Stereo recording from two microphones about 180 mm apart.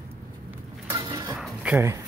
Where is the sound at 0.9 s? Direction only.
15° right (ahead or behind).